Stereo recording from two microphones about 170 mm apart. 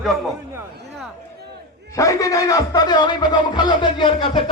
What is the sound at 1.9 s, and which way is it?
Speech, 20° left (ahead or behind).